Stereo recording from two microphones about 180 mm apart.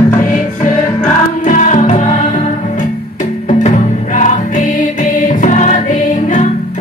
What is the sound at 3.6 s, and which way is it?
Music, 40° left (ahead or behind).